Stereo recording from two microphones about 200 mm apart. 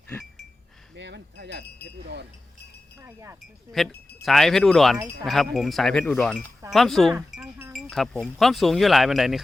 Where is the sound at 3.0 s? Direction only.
15° right (ahead or behind).